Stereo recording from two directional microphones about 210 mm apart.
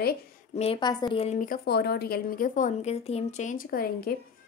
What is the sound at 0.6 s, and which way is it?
A woman's voice, 25° left (ahead or behind).